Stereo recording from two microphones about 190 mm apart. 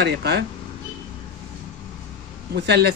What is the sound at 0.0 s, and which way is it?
Speech, 60° right (ahead or behind).